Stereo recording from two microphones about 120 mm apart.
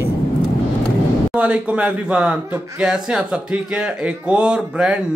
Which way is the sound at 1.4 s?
10° right (ahead or behind).